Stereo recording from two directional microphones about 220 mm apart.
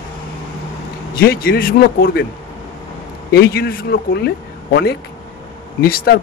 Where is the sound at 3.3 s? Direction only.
45° left (ahead or behind).